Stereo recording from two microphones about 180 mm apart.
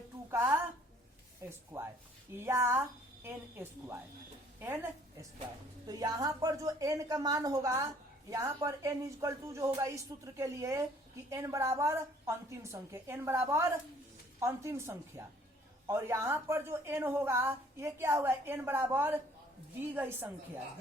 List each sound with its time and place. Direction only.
0.3 s a woman's voice: 15° right (ahead or behind)